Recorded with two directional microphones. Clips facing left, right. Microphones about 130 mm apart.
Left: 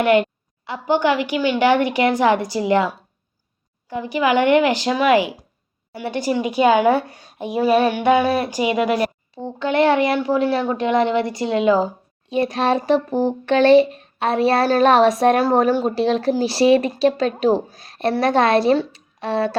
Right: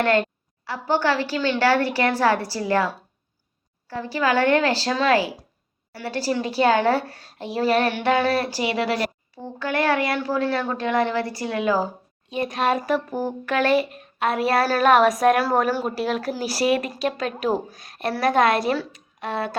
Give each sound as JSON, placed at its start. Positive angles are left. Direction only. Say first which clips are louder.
{"t": 0.0, "sound": "a woman's voice", "louder": "left 4 dB", "side_deg": 15}
{"t": 12.3, "sound": "speech", "louder": "left 4 dB", "side_deg": 30}